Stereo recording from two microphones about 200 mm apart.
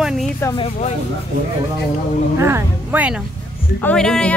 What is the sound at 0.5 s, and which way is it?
Speech, 35° left (ahead or behind).